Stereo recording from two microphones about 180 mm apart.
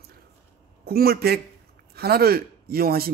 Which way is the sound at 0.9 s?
55° right (ahead or behind).